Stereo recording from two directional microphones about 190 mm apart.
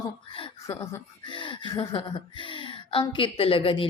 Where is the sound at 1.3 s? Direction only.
25° left (ahead or behind).